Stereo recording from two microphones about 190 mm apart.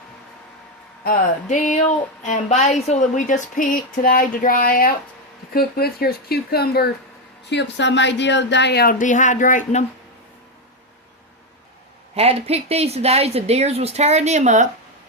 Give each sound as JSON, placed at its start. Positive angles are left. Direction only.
{"t": 1.0, "sound": "music", "side_deg": 45}
{"t": 2.2, "sound": "a woman's voice", "side_deg": 35}
{"t": 7.4, "sound": "speech", "side_deg": 65}
{"t": 12.1, "sound": "speech", "side_deg": -30}